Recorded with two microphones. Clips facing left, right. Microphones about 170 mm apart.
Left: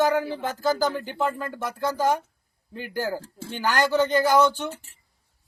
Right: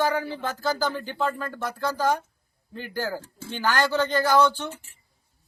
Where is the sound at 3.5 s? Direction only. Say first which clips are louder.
Left 1 dB; 15° left (ahead or behind).